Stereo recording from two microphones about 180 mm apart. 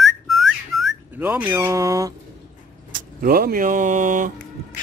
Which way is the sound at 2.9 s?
55° right (ahead or behind).